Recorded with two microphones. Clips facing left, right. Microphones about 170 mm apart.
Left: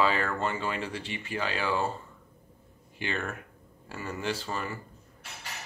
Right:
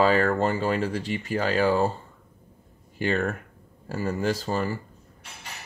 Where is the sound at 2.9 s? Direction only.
40° right (ahead or behind).